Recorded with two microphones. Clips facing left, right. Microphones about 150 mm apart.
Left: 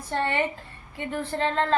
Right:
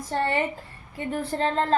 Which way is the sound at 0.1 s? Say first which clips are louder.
Right 1 dB; 40° right (ahead or behind).